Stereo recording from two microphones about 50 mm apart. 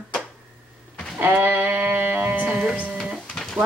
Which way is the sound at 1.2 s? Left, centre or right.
Right.